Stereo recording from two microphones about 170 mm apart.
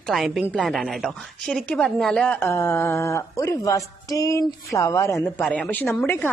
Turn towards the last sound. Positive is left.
turn(degrees=10)  # may be behind; listen again after turning